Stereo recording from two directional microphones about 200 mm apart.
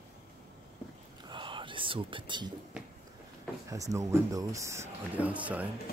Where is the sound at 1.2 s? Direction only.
25° right (ahead or behind).